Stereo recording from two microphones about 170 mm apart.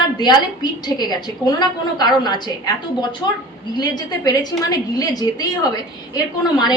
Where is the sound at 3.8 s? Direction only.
25° left (ahead or behind).